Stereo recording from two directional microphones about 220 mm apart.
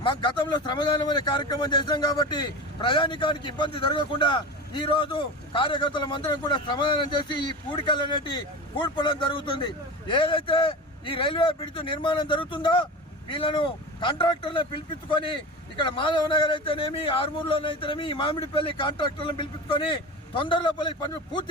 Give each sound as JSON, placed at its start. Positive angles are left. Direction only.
{"t": 0.0, "sound": "speech", "side_deg": 20}